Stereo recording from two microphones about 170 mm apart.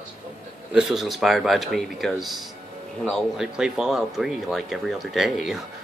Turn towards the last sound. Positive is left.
turn(degrees=-5)  # may be behind; listen again after turning